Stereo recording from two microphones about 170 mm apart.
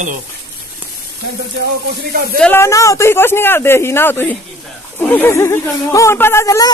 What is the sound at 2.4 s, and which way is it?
Speech, 15° left (ahead or behind).